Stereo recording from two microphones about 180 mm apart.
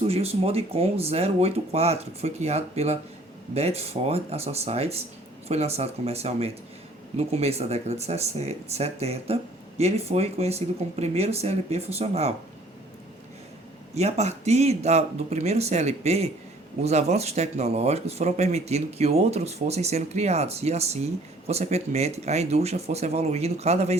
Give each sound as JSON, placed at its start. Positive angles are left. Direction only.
{"t": 0.1, "sound": "speech", "side_deg": -35}
{"t": 13.9, "sound": "speech", "side_deg": -35}